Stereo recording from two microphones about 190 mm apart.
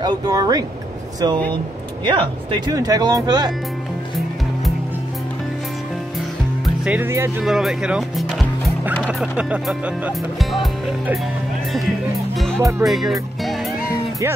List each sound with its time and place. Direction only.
0.0 s speech: 20° right (ahead or behind)
6.6 s speech: 5° right (ahead or behind)
12.5 s speech: 10° right (ahead or behind)
12.8 s music: centre (ahead or behind)